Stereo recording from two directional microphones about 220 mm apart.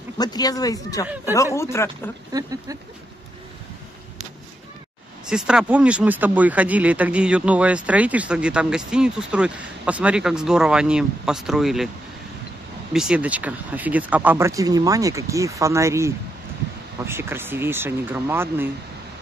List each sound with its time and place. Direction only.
0.2 s speech: 15° left (ahead or behind)
2.3 s speech: 15° right (ahead or behind)
5.2 s speech: 5° right (ahead or behind)
12.9 s speech: 5° right (ahead or behind)